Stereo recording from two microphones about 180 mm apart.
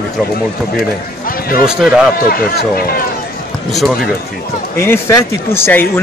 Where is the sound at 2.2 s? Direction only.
55° left (ahead or behind).